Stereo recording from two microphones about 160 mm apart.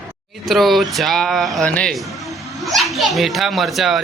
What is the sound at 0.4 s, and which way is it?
Speech, centre (ahead or behind).